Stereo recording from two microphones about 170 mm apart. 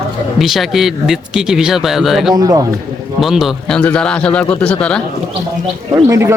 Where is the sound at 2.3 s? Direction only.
20° right (ahead or behind).